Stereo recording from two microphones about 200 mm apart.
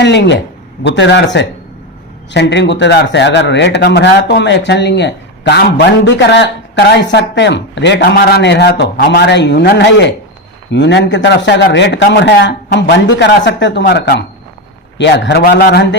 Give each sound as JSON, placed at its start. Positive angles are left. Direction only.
{"t": 0.0, "sound": "speech", "side_deg": 60}